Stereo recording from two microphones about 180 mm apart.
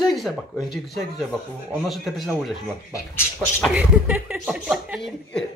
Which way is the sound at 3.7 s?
10° right (ahead or behind).